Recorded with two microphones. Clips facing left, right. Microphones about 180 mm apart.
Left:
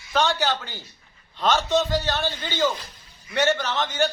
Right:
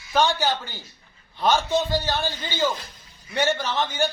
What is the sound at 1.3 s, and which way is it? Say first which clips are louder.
Speech: right 1 dB; 10° right (ahead or behind).